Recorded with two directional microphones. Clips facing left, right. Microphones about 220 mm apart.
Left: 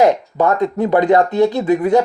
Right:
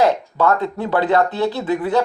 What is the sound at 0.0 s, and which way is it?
Speech, 20° left (ahead or behind).